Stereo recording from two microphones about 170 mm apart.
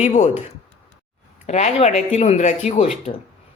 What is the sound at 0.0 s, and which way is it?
Speech, 45° left (ahead or behind).